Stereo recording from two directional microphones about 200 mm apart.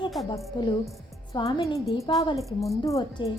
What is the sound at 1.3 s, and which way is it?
A woman's voice, 20° left (ahead or behind).